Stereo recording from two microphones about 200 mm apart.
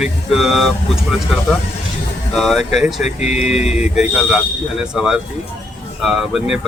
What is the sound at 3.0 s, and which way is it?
Speech, 35° left (ahead or behind).